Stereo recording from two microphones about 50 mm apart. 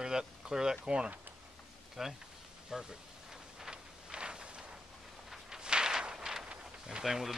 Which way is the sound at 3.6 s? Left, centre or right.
Centre.